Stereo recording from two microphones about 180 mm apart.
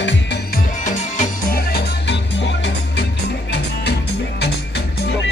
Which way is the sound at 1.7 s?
75° left (ahead or behind).